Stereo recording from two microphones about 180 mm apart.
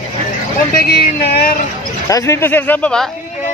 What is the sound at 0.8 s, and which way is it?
Speech, 55° left (ahead or behind).